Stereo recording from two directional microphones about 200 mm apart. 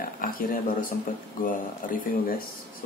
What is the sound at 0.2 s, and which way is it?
Speech, 45° left (ahead or behind).